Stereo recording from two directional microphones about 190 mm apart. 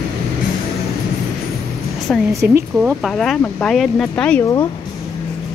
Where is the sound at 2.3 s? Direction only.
15° right (ahead or behind).